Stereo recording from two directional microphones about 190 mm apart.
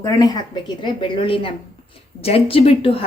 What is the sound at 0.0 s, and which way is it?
A woman's voice, 20° left (ahead or behind).